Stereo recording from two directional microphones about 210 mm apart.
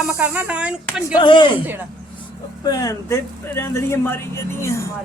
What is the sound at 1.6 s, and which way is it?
Speech, 10° right (ahead or behind).